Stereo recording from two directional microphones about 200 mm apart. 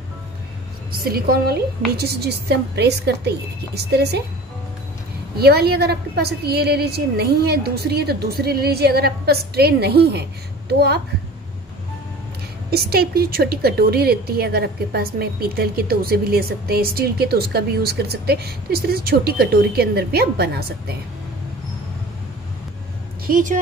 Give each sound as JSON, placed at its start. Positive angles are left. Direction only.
{"t": 0.9, "sound": "a woman's voice", "side_deg": -50}
{"t": 5.4, "sound": "a woman's voice", "side_deg": -50}
{"t": 12.7, "sound": "a woman's voice", "side_deg": -50}
{"t": 23.2, "sound": "a woman's voice", "side_deg": -40}